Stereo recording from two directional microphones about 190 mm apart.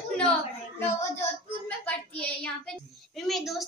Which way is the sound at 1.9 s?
5° left (ahead or behind).